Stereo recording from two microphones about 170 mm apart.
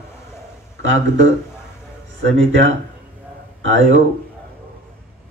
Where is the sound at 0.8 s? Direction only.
90° right.